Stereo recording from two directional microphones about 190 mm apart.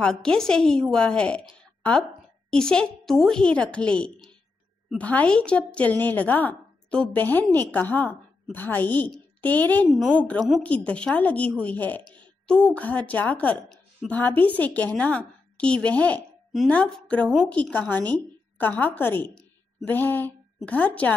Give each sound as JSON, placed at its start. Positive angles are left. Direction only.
{"t": 0.0, "sound": "a woman's voice", "side_deg": 5}